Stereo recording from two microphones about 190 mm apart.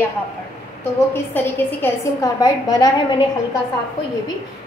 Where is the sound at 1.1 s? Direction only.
10° left (ahead or behind).